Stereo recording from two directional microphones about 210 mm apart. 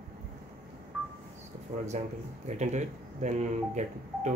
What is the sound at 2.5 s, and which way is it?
Speech, 35° right (ahead or behind).